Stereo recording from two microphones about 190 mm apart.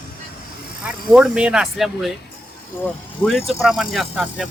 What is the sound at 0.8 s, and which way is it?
Speech, 5° right (ahead or behind).